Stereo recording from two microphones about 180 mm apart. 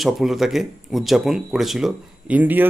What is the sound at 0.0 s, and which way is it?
Speech, centre (ahead or behind).